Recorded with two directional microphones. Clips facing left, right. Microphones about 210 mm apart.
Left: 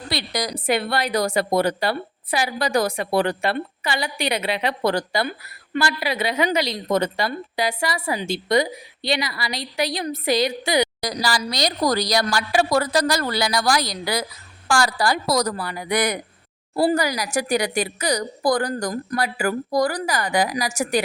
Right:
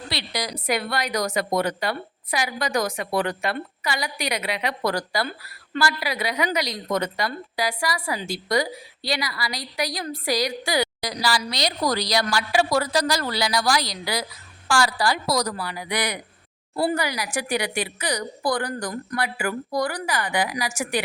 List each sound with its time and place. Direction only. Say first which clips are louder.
0.1 s a woman's voice: left 4 dB; 45° left (ahead or behind)
0.6 s a woman's voice: left 3 dB; 30° left (ahead or behind)
11.0 s a woman's voice: left 1 dB; 45° left (ahead or behind)